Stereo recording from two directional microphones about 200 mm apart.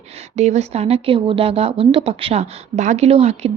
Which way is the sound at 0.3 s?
35° right (ahead or behind).